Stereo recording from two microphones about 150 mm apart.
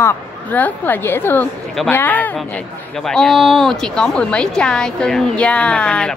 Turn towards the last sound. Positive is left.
turn(degrees=5)  # may be behind; listen again after turning